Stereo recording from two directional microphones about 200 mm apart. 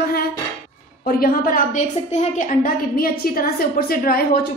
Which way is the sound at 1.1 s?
45° left (ahead or behind).